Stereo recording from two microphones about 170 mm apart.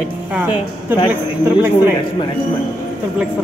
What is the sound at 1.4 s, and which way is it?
Speech, 10° right (ahead or behind).